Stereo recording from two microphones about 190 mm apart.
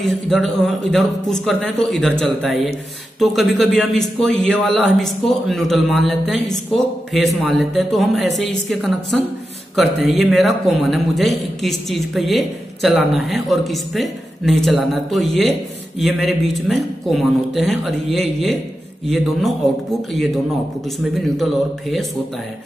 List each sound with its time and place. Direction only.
0.0 s a man's voice: centre (ahead or behind)